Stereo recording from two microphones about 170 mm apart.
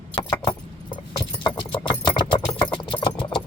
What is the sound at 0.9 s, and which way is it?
Keys jangling, 30° left (ahead or behind).